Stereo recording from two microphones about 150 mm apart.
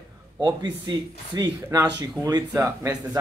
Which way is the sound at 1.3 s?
25° right (ahead or behind).